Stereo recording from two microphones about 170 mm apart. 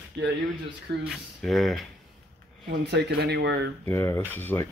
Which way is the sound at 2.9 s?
75° right (ahead or behind).